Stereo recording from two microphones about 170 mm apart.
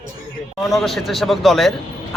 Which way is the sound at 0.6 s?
Centre (ahead or behind).